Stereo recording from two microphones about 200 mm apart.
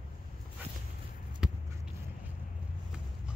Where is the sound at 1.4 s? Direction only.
5° right (ahead or behind).